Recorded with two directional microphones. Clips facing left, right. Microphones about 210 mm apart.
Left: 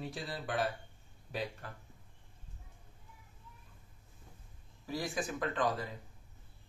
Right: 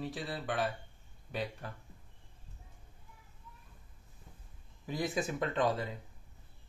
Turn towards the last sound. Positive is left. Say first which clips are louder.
# right 2 dB
turn(degrees=-25)  # may be behind; listen again after turning